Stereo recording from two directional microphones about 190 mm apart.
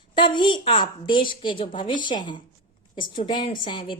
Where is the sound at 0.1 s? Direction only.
25° left (ahead or behind).